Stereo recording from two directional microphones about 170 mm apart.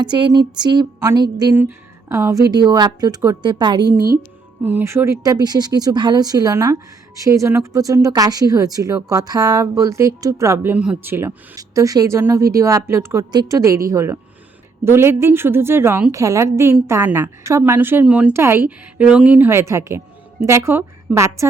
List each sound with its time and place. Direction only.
0.0 s speech: 25° right (ahead or behind)
4.6 s speech: 15° right (ahead or behind)